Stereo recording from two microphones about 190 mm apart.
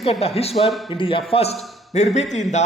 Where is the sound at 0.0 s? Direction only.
30° left (ahead or behind).